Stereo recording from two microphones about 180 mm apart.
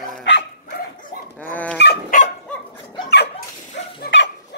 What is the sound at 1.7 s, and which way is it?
Dog, 65° left (ahead or behind).